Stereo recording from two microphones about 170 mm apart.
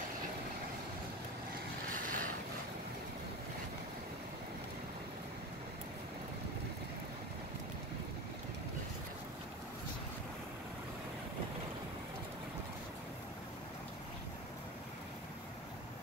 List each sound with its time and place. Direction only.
1.9 s vehicle: 50° right (ahead or behind)